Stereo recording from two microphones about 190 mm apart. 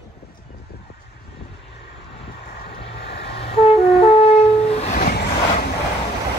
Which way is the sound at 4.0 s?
30° left (ahead or behind).